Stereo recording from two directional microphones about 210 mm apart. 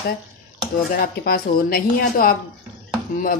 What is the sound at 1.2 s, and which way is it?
Speech, 45° left (ahead or behind).